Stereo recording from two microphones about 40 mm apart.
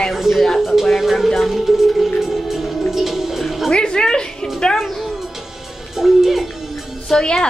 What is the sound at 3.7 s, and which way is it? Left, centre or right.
Speech, left.